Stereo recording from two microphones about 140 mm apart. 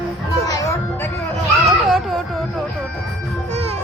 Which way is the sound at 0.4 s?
25° left (ahead or behind).